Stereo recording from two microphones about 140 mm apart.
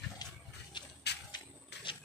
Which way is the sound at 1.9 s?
35° left (ahead or behind).